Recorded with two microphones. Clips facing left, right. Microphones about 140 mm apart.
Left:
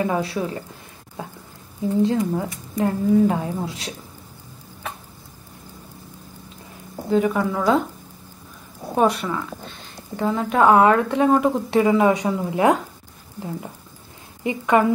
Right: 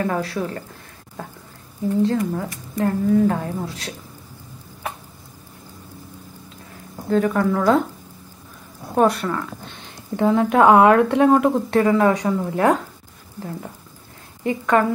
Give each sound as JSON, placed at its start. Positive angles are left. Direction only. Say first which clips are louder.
{"t": 0.0, "sound": "a woman's voice", "louder": "even", "side_deg": 15}
{"t": 7.1, "sound": "a woman's voice", "louder": "right 1 dB", "side_deg": 10}
{"t": 8.9, "sound": "a woman's voice", "louder": "right 2 dB", "side_deg": 5}
{"t": 14.4, "sound": "a woman's voice", "louder": "even", "side_deg": 10}